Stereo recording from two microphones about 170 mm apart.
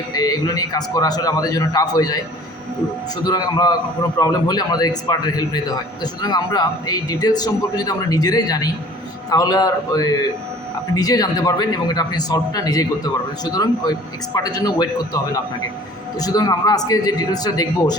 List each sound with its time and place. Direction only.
0.1 s a man's voice: 20° left (ahead or behind)
3.2 s a man's voice: 25° left (ahead or behind)